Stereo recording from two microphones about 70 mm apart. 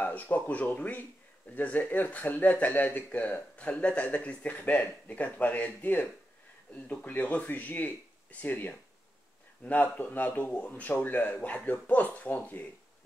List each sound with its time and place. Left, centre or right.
0.0 s speech: left